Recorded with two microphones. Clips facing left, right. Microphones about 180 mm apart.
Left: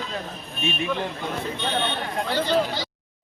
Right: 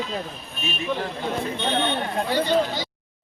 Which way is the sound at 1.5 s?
15° right (ahead or behind).